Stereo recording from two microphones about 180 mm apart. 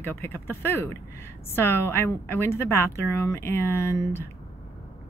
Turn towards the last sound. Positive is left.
turn(degrees=15)  # may be behind; listen again after turning